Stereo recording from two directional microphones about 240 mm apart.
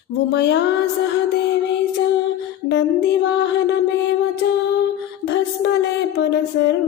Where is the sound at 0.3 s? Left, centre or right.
Left.